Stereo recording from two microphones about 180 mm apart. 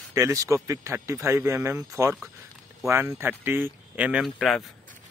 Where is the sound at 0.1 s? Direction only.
15° right (ahead or behind).